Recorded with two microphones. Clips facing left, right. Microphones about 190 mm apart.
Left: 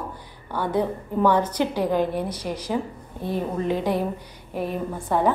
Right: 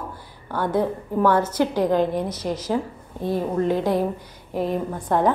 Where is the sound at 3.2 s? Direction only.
15° right (ahead or behind).